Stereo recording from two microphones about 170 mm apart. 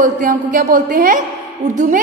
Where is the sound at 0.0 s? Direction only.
50° right (ahead or behind).